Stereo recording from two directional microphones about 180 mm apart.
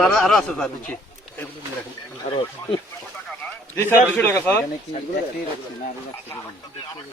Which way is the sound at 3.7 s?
15° left (ahead or behind).